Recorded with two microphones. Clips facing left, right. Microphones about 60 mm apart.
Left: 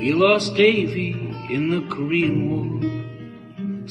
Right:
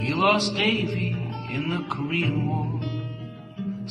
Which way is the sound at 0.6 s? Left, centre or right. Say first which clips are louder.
Left 8 dB; left.